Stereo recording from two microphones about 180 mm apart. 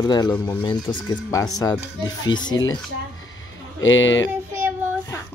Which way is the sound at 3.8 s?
90° left.